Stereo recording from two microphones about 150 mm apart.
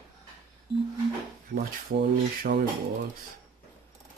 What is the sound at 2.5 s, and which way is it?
Speech, 90° right.